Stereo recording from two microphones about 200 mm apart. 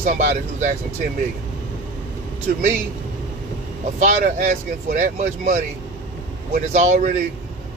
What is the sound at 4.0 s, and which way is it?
Speech, 45° right (ahead or behind).